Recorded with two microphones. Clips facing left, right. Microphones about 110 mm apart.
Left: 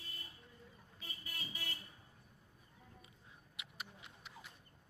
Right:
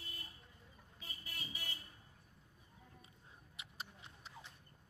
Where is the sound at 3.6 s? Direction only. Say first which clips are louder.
Even; 35° right (ahead or behind).